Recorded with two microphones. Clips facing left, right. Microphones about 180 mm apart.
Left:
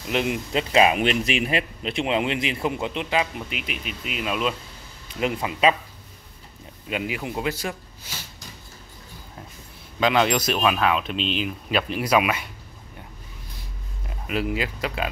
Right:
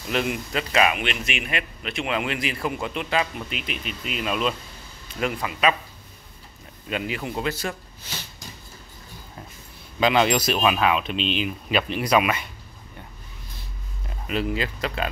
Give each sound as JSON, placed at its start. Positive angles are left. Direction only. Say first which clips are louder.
{"t": 0.1, "sound": "a man's voice", "louder": "left 2 dB", "side_deg": 20}
{"t": 5.0, "sound": "a man's voice", "louder": "left 1 dB", "side_deg": 20}
{"t": 6.9, "sound": "speech", "louder": "even", "side_deg": 15}
{"t": 9.9, "sound": "speech", "louder": "right 1 dB", "side_deg": 0}
{"t": 14.0, "sound": "speech", "louder": "even", "side_deg": 10}